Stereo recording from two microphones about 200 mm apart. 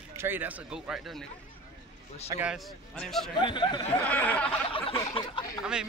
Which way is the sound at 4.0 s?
5° left (ahead or behind).